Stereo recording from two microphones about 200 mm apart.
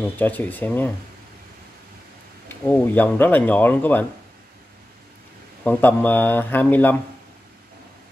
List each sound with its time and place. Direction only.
0.0 s speech: 10° left (ahead or behind)
2.4 s speech: 10° left (ahead or behind)
5.6 s speech: 10° left (ahead or behind)